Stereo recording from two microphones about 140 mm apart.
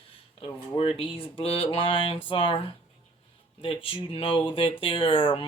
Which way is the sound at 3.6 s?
40° left (ahead or behind).